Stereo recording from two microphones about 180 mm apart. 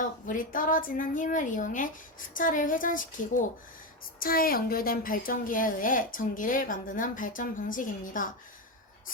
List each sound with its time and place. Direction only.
0.3 s a woman's voice: 50° left (ahead or behind)